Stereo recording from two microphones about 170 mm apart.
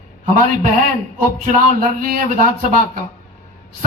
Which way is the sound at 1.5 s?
55° right (ahead or behind).